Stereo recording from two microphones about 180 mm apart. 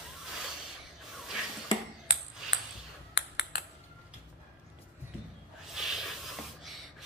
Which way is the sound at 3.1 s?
65° left (ahead or behind).